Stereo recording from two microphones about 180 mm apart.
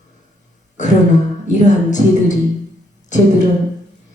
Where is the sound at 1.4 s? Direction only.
40° left (ahead or behind).